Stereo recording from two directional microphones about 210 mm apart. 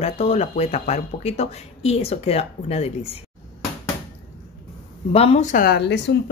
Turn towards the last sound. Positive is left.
turn(degrees=55)  # may be behind; listen again after turning